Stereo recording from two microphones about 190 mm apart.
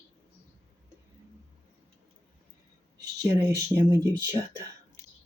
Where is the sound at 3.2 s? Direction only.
15° right (ahead or behind).